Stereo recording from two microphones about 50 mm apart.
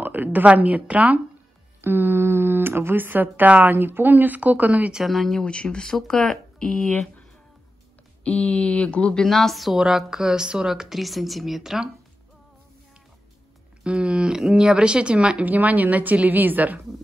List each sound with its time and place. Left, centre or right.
0.0 s a woman's voice: right
1.8 s speech: right
3.6 s a woman's voice: right
4.9 s a woman's voice: centre
5.4 s speech: centre
8.2 s speech: left
9.3 s a woman's voice: centre
9.8 s speech: centre
13.8 s a woman's voice: centre
15.4 s a woman's voice: right